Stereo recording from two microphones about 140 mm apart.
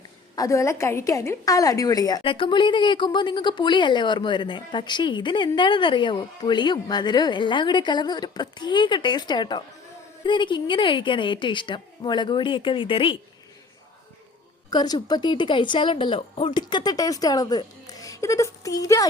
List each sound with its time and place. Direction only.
0.3 s a woman's voice: 20° left (ahead or behind); by 13.1 s 40° left (ahead or behind)
14.7 s speech: 30° left (ahead or behind)